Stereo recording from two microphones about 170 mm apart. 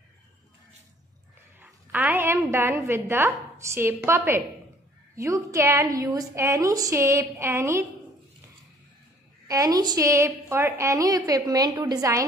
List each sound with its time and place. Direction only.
1.6 s a woman's voice: 10° right (ahead or behind)
9.5 s a woman's voice: 20° right (ahead or behind)